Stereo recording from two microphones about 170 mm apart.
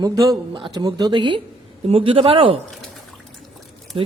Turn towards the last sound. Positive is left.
turn(degrees=-30)  # may be behind; listen again after turning